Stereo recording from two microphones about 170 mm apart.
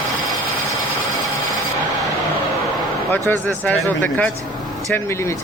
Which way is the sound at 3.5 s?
10° left (ahead or behind).